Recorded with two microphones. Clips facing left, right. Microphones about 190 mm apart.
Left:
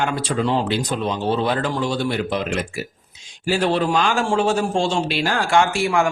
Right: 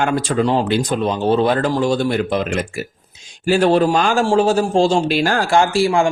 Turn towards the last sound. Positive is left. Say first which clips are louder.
# right 3 dB
turn(degrees=-35)  # may be behind; listen again after turning